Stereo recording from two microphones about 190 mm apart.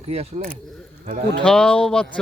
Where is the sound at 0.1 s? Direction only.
35° right (ahead or behind).